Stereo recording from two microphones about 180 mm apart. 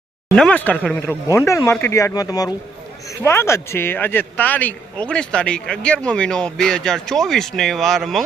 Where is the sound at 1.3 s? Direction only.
15° left (ahead or behind).